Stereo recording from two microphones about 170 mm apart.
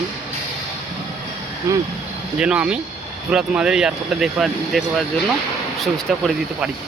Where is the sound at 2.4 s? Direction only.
5° right (ahead or behind).